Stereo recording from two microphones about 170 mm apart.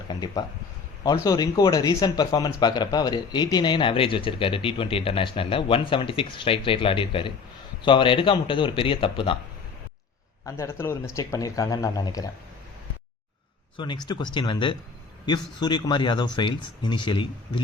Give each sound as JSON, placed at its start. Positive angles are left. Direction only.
{"t": 0.1, "sound": "speech", "side_deg": 25}
{"t": 10.4, "sound": "speech", "side_deg": 15}
{"t": 13.7, "sound": "speech", "side_deg": 25}